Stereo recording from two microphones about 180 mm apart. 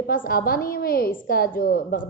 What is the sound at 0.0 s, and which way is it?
A woman's voice, 55° left (ahead or behind).